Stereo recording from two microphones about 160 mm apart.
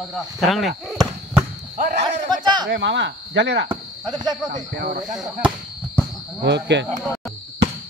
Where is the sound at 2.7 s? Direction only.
90° right.